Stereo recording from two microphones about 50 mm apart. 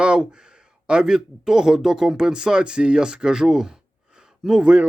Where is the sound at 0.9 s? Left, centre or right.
Centre.